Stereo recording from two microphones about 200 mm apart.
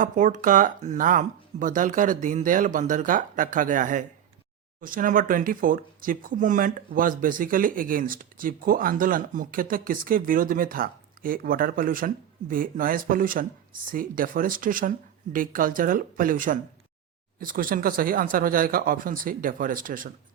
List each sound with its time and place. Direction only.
0.0 s speech: 40° right (ahead or behind)